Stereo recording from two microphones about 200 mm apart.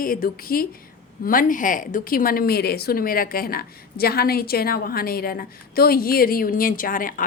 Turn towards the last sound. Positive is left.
turn(degrees=45)  # may be behind; listen again after turning